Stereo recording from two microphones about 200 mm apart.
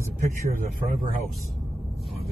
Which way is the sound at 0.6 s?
45° right (ahead or behind).